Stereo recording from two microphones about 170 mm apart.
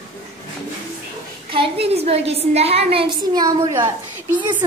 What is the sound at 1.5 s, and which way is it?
A woman's voice, 35° right (ahead or behind).